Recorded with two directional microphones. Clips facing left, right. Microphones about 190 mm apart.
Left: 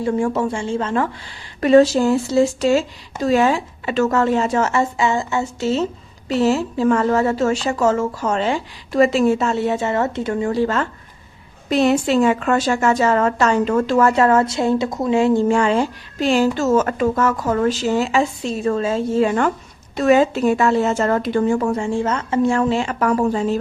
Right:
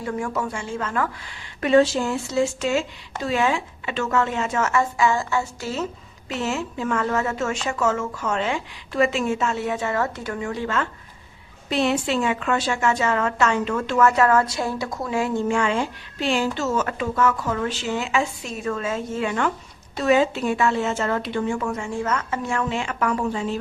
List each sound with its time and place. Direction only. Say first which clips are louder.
0.0 s speech: left 7 dB; 30° left (ahead or behind)
1.6 s speech: left 5 dB; 40° left (ahead or behind)